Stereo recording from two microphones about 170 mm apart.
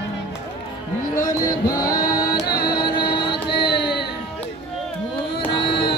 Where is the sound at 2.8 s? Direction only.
30° left (ahead or behind).